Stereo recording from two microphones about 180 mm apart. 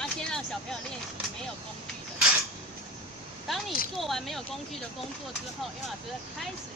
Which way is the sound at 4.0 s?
Centre (ahead or behind).